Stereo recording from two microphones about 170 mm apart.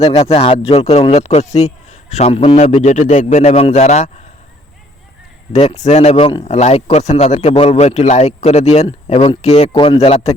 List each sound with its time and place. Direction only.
0.0 s a man's voice: 35° left (ahead or behind)
5.8 s a man's voice: 40° left (ahead or behind)